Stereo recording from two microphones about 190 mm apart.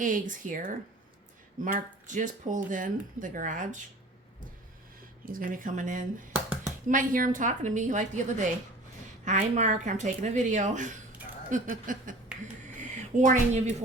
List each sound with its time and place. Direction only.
0.0 s speech: 45° right (ahead or behind)
5.2 s speech: 45° right (ahead or behind)
6.3 s a sound: 5° right (ahead or behind)
6.8 s speech: 45° right (ahead or behind)